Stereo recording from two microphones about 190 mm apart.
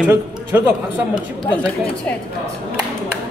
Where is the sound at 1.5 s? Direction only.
5° left (ahead or behind).